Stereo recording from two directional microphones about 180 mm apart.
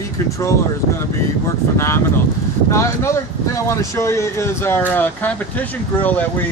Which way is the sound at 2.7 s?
15° left (ahead or behind).